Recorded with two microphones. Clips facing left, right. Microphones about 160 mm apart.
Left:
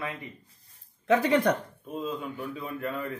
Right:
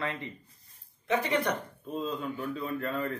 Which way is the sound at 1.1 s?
90° left.